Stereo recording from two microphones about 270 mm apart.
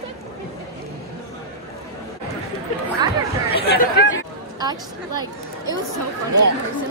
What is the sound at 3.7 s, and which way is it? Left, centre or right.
Speech, left.